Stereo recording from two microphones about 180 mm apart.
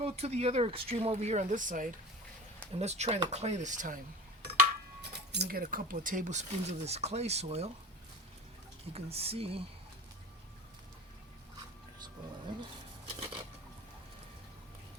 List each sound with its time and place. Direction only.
0.0 s speech: 35° right (ahead or behind)
5.1 s speech: 65° right (ahead or behind); by 7.7 s 35° right (ahead or behind)
8.9 s speech: 35° right (ahead or behind)
13.1 s dishes: 35° right (ahead or behind)